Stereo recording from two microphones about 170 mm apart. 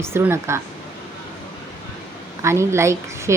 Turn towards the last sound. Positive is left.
turn(degrees=-15)  # may be behind; listen again after turning